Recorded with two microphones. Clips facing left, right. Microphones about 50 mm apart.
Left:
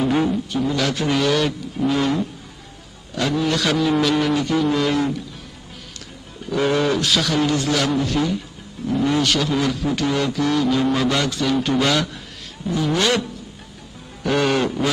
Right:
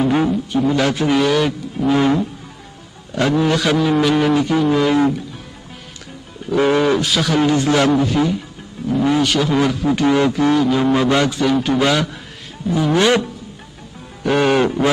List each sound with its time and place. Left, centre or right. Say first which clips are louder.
0.0 s a man's voice: right 3 dB; centre
0.5 s a man's voice: right 5 dB; centre
6.5 s a man's voice: right 4 dB; centre
14.2 s music: right 4 dB; centre